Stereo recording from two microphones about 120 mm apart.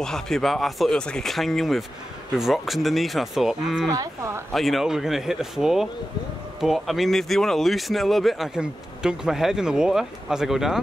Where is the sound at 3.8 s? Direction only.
25° right (ahead or behind).